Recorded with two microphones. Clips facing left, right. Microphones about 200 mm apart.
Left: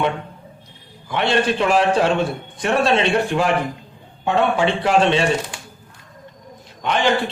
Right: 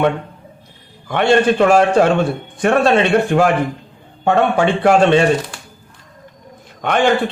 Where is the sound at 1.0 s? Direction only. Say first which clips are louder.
Right 6 dB; 50° right (ahead or behind).